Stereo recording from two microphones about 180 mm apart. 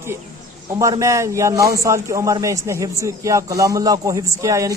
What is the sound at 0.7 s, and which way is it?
A man's voice, 20° right (ahead or behind).